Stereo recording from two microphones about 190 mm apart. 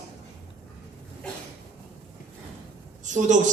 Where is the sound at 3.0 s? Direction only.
40° right (ahead or behind).